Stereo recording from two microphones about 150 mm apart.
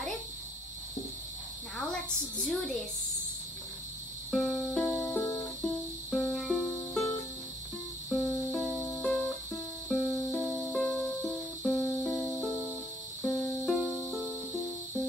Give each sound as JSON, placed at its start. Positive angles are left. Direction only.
{"t": 2.4, "sound": "a sound", "side_deg": 0}
{"t": 4.3, "sound": "music", "side_deg": 5}
{"t": 5.2, "sound": "music", "side_deg": 20}
{"t": 5.6, "sound": "music", "side_deg": 10}
{"t": 8.5, "sound": "music", "side_deg": 0}